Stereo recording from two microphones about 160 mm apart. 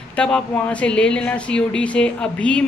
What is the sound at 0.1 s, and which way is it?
Speech, 5° left (ahead or behind).